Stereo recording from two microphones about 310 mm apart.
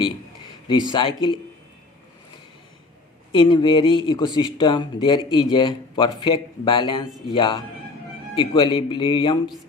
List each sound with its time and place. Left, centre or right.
0.7 s speech: centre
3.3 s speech: centre